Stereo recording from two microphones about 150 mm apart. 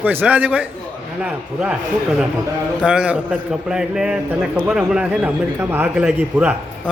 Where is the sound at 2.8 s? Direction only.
5° right (ahead or behind).